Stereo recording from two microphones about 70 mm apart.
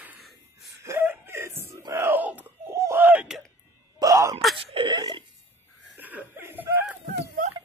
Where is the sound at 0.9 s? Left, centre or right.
Right.